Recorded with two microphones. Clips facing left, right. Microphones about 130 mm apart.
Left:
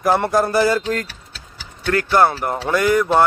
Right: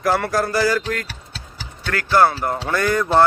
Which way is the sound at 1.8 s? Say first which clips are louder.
Left 1 dB; 25° left (ahead or behind).